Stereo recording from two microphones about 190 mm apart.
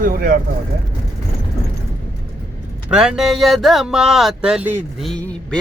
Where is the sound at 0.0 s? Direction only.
50° right (ahead or behind).